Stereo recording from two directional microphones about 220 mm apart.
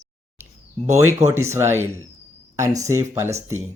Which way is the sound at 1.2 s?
10° right (ahead or behind).